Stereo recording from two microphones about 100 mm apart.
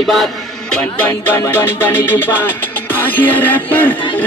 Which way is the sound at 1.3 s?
25° left (ahead or behind).